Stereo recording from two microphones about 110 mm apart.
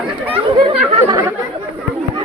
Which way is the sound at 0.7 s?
55° right (ahead or behind).